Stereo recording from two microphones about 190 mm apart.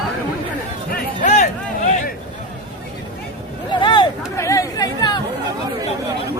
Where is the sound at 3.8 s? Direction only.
25° left (ahead or behind).